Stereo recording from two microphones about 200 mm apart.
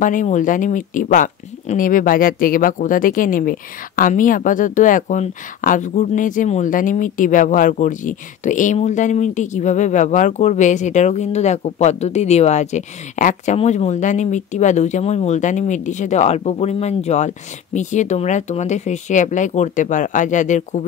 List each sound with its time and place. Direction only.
0.0 s speech: 40° left (ahead or behind)